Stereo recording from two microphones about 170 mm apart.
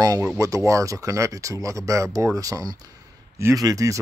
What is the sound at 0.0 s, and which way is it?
Speech, 20° right (ahead or behind).